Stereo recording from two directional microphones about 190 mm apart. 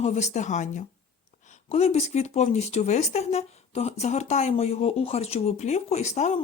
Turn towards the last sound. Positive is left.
turn(degrees=35)  # may be behind; listen again after turning